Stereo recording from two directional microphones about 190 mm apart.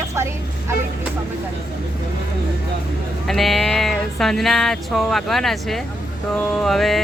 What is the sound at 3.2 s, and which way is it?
Speech, centre (ahead or behind).